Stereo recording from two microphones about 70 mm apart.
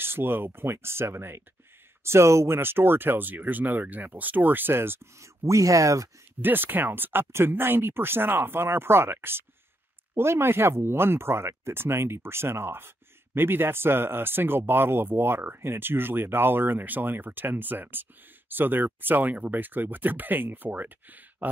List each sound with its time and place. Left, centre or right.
0.0 s speech: right
5.4 s speech: right
6.4 s speech: right